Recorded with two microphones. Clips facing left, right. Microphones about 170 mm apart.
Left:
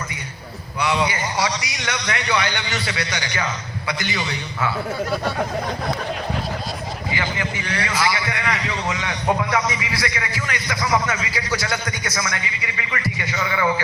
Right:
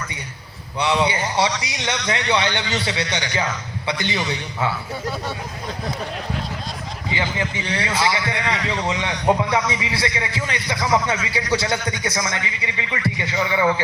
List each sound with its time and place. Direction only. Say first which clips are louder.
0.8 s a man's voice: right 2 dB; 30° right (ahead or behind)
7.1 s a man's voice: right 2 dB; 25° right (ahead or behind)